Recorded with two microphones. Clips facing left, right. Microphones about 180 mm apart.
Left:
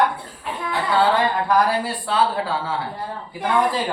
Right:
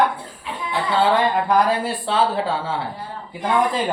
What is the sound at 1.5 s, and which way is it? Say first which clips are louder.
Speech: right 1 dB; 25° right (ahead or behind).